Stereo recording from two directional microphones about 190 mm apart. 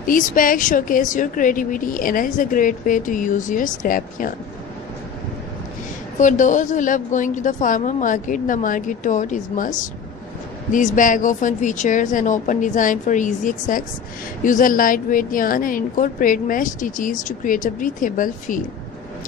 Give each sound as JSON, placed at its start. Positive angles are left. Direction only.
{"t": 0.0, "sound": "a woman's voice", "side_deg": 45}
{"t": 6.1, "sound": "a woman's voice", "side_deg": 40}